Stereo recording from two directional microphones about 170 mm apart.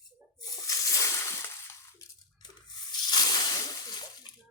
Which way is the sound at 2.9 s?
25° left (ahead or behind).